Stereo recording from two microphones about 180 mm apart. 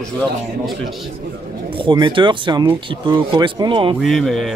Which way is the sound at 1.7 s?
25° right (ahead or behind).